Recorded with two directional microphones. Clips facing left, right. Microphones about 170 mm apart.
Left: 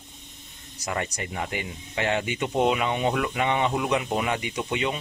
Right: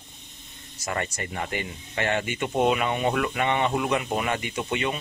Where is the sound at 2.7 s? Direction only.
15° left (ahead or behind).